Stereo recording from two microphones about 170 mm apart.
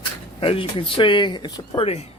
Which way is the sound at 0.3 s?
30° left (ahead or behind).